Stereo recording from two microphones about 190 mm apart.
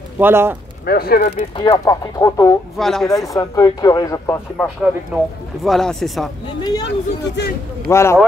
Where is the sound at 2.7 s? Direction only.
Centre (ahead or behind).